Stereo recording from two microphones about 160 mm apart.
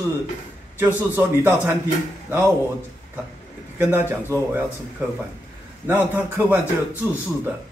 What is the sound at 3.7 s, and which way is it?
Speech, 15° right (ahead or behind).